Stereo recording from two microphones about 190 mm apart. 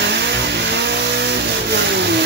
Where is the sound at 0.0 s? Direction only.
65° right (ahead or behind).